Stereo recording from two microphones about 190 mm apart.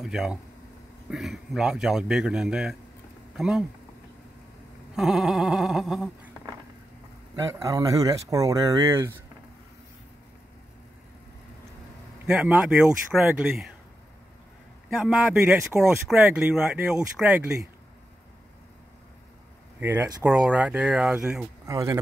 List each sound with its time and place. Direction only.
0.0 s speech: centre (ahead or behind)
4.9 s speech: centre (ahead or behind)
7.6 s speech: 20° right (ahead or behind)
12.3 s speech: 5° right (ahead or behind)
14.9 s speech: 5° right (ahead or behind)
19.8 s speech: 10° right (ahead or behind)
21.6 s speech: 15° right (ahead or behind)